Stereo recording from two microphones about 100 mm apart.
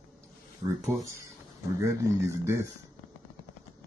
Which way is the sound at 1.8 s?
30° right (ahead or behind).